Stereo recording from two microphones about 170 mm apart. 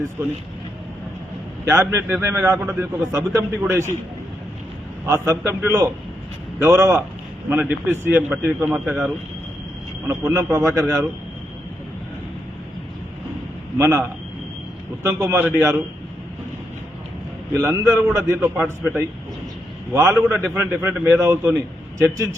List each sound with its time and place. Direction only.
1.6 s speech: 15° right (ahead or behind)
5.0 s speech: 15° right (ahead or behind)
10.1 s speech: 15° right (ahead or behind)
13.7 s speech: 15° right (ahead or behind)
15.0 s speech: 15° right (ahead or behind)
17.6 s speech: 15° right (ahead or behind)